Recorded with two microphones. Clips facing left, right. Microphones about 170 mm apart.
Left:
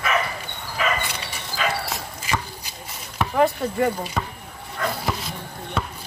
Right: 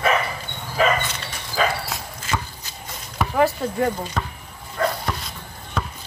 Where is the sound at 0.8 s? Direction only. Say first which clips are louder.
Right 5 dB; 35° right (ahead or behind).